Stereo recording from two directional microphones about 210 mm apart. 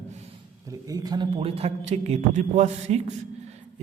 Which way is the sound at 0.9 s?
20° right (ahead or behind).